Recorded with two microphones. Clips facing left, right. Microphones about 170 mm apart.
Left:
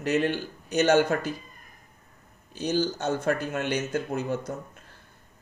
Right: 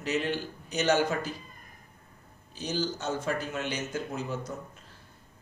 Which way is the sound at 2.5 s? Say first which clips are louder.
Left 5 dB; 55° left (ahead or behind).